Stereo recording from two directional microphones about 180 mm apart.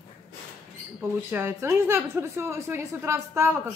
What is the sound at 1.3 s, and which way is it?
A woman's voice, 15° right (ahead or behind).